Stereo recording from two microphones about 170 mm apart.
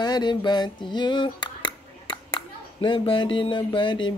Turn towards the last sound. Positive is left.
turn(degrees=30)  # may be behind; listen again after turning